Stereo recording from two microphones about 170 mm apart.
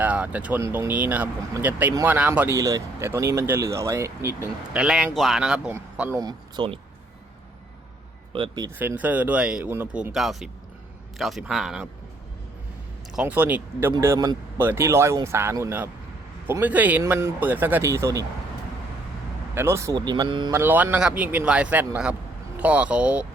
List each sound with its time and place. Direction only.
0.0 s speech: 10° right (ahead or behind)
4.7 s speech: 5° right (ahead or behind); by 6.7 s 25° right (ahead or behind)
8.3 s speech: 25° right (ahead or behind)
8.8 s speech: 10° right (ahead or behind)
13.1 s speech: 10° right (ahead or behind)
19.5 s speech: 15° right (ahead or behind)
20.5 s speech: 10° right (ahead or behind)